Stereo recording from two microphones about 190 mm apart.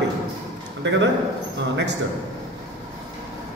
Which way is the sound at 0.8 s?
70° right (ahead or behind).